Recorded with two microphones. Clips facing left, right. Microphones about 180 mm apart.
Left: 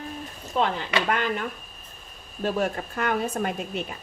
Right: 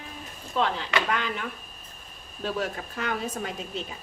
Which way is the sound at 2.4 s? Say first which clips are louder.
Left 4 dB; 50° left (ahead or behind).